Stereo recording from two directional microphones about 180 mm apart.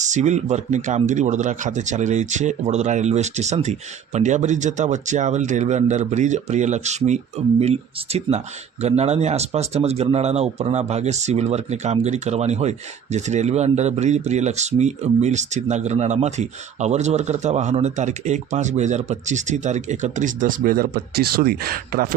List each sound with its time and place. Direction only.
0.0 s speech: 40° right (ahead or behind)